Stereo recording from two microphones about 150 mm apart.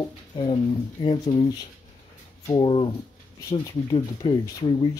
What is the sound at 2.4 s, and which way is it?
Speech, 30° left (ahead or behind).